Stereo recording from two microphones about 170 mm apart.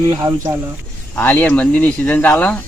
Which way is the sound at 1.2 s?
10° left (ahead or behind).